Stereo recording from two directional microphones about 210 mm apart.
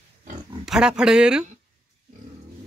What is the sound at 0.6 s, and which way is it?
Speech, 5° right (ahead or behind).